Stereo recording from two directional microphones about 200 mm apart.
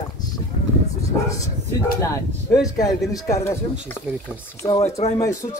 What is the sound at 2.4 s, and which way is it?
Speech, 15° left (ahead or behind).